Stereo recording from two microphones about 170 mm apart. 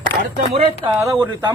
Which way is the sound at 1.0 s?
20° right (ahead or behind).